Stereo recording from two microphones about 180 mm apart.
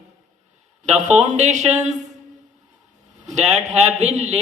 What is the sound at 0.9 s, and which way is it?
A man's voice, 40° right (ahead or behind).